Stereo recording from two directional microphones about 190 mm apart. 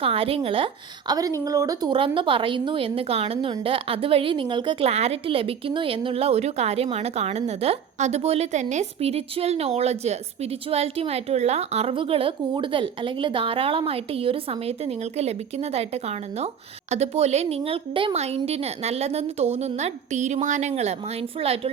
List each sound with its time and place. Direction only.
0.0 s a woman's voice: 30° right (ahead or behind)